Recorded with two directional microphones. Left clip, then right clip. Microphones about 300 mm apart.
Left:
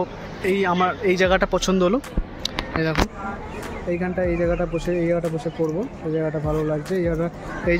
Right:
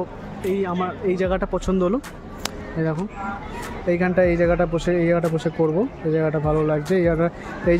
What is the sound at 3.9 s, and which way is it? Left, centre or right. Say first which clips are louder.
A man's voice: right 5 dB; right.